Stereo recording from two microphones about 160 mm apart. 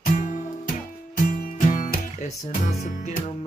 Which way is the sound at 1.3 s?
60° left (ahead or behind).